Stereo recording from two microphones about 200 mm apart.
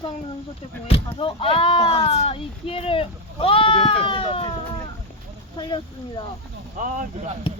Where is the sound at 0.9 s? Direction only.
30° left (ahead or behind).